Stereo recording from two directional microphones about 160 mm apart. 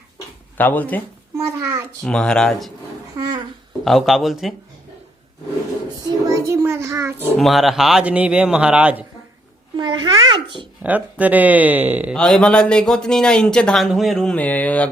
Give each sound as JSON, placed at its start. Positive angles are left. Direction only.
{"t": 0.5, "sound": "speech", "side_deg": 10}
{"t": 2.0, "sound": "speech", "side_deg": 5}
{"t": 3.2, "sound": "babbling", "side_deg": -25}
{"t": 3.8, "sound": "speech", "side_deg": 0}
{"t": 6.2, "sound": "child singing", "side_deg": -20}
{"t": 7.3, "sound": "speech", "side_deg": 0}
{"t": 9.7, "sound": "babbling", "side_deg": -30}
{"t": 10.8, "sound": "speech", "side_deg": -10}
{"t": 12.1, "sound": "speech", "side_deg": 5}